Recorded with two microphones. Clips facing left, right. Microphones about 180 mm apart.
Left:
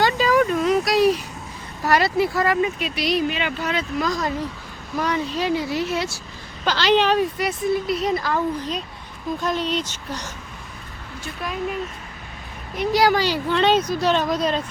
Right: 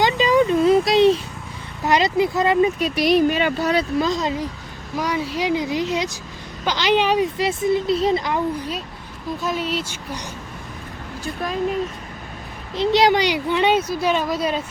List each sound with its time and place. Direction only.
0.0 s a sound: 15° right (ahead or behind)
0.4 s a sound: 30° right (ahead or behind)
1.8 s speech: 20° right (ahead or behind)
2.7 s speech: 40° right (ahead or behind); by 4.4 s 20° right (ahead or behind)
4.9 s speech: 10° right (ahead or behind)
7.3 s speech: 25° right (ahead or behind)
12.7 s speech: 25° right (ahead or behind); by 14.6 s 5° right (ahead or behind)